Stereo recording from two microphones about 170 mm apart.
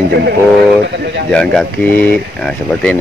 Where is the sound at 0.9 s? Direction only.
90° right.